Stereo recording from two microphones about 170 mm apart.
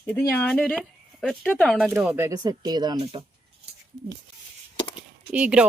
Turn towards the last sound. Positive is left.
turn(degrees=-5)  # may be behind; listen again after turning